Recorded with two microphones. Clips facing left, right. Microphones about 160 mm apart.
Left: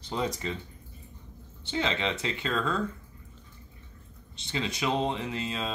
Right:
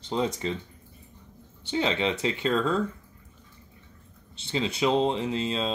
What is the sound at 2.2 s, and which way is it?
Speech, 25° right (ahead or behind).